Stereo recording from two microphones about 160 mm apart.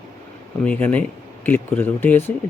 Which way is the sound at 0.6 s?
10° left (ahead or behind).